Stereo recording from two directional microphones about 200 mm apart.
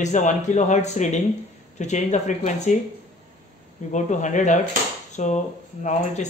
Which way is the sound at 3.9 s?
35° left (ahead or behind).